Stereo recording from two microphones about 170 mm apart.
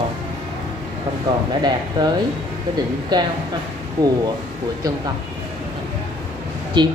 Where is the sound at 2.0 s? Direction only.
25° right (ahead or behind).